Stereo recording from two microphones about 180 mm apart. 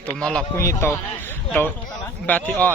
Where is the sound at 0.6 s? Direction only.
15° left (ahead or behind).